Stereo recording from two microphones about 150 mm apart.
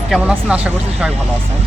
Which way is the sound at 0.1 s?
5° right (ahead or behind).